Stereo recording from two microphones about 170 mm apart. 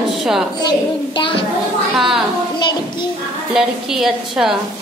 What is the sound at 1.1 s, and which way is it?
Speech, 30° left (ahead or behind).